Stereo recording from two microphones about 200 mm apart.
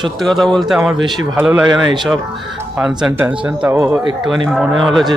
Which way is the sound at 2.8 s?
5° right (ahead or behind).